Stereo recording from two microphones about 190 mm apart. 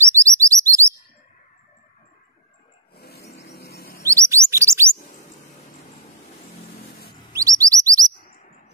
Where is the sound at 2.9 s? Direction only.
55° left (ahead or behind).